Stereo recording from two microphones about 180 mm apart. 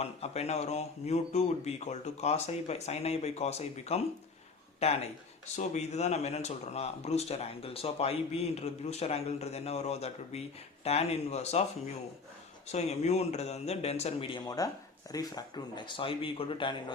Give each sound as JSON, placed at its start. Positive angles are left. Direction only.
{"t": 0.0, "sound": "speech", "side_deg": 35}
{"t": 12.7, "sound": "speech", "side_deg": 35}